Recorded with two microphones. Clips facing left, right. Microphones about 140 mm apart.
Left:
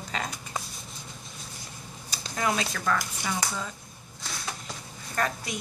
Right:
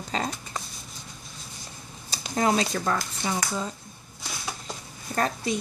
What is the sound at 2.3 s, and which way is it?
Speech, 30° right (ahead or behind).